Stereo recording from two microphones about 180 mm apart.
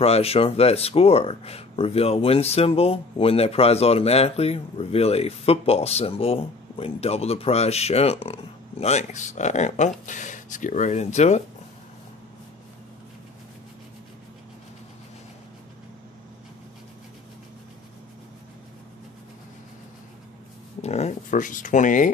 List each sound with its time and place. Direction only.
0.0 s speech: 35° left (ahead or behind)
20.8 s speech: 35° left (ahead or behind)